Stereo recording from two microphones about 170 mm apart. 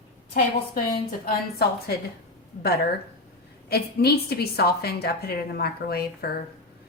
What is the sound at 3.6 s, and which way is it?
A woman's voice, 70° left (ahead or behind).